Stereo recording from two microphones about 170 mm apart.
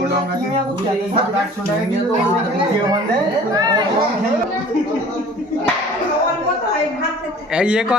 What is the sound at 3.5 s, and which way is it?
Speech, 25° right (ahead or behind).